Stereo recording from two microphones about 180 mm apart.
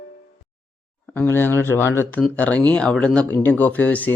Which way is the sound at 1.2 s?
10° left (ahead or behind).